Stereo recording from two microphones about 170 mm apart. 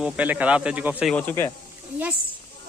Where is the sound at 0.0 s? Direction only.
10° right (ahead or behind).